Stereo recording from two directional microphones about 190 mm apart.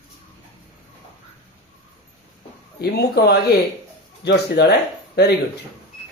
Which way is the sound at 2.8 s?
60° left (ahead or behind).